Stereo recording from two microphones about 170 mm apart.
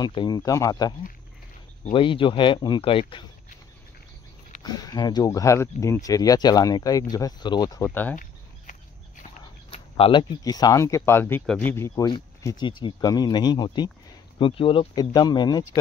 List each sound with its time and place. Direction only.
0.0 s speech: 25° left (ahead or behind)
2.0 s speech: 30° left (ahead or behind)
4.6 s speech: 25° left (ahead or behind)
9.3 s a sound: 35° left (ahead or behind)
10.4 s speech: 20° left (ahead or behind)
12.4 s speech: 25° left (ahead or behind)